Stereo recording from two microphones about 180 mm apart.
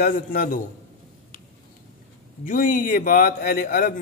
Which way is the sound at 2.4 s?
50° left (ahead or behind).